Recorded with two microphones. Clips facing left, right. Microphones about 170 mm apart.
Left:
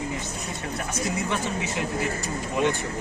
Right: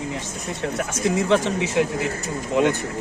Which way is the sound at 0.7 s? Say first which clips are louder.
Right 6 dB; 90° right.